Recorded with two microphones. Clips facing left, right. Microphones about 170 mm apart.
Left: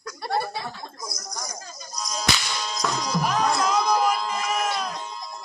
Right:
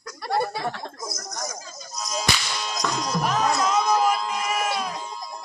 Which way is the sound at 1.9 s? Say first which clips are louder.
Right 2 dB; 5° right (ahead or behind).